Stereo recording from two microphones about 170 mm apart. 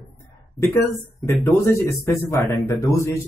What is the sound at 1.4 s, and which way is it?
A man's voice, 10° left (ahead or behind).